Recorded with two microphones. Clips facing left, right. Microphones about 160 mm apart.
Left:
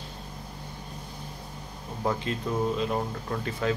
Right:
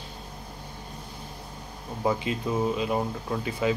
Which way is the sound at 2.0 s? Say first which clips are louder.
Right 2 dB; 5° right (ahead or behind).